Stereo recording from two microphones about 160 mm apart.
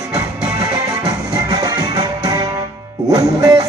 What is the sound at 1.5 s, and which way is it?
Music, 25° right (ahead or behind).